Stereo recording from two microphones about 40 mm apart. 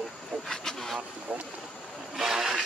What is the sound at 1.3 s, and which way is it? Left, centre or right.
Speech, right.